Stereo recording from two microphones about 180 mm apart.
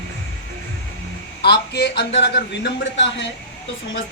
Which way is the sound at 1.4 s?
65° left (ahead or behind).